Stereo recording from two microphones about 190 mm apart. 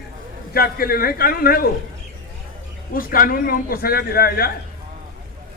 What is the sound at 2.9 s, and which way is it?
A man's voice, 50° left (ahead or behind).